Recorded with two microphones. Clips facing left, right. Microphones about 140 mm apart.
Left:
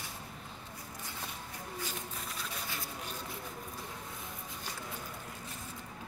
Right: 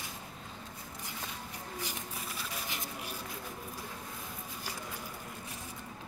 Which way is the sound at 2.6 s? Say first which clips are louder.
Right 1 dB; 15° right (ahead or behind).